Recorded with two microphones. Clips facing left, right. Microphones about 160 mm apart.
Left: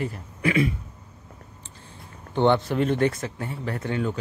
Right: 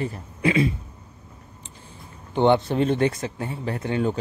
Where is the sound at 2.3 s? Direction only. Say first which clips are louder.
Right 2 dB; 15° right (ahead or behind).